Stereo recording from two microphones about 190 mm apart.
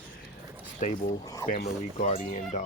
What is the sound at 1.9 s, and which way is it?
Speech, 35° left (ahead or behind).